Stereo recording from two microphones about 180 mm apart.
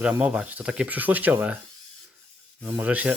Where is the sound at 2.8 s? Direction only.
10° right (ahead or behind).